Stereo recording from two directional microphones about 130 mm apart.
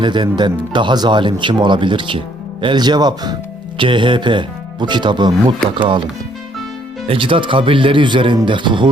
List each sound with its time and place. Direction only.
0.0 s speech: 35° right (ahead or behind)
7.1 s speech: 40° right (ahead or behind)